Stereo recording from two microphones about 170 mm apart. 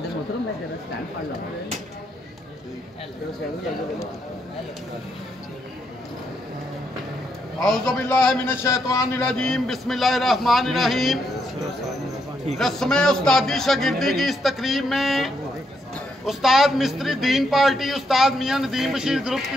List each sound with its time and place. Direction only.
7.6 s a man's voice: 5° left (ahead or behind)
8.6 s a man's voice: 15° left (ahead or behind)
9.2 s a man's voice: 5° left (ahead or behind)
12.5 s a man's voice: centre (ahead or behind)